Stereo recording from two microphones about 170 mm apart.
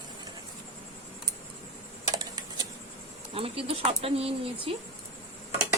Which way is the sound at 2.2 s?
25° right (ahead or behind).